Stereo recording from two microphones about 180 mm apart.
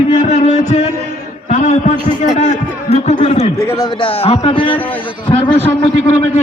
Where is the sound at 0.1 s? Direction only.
40° left (ahead or behind).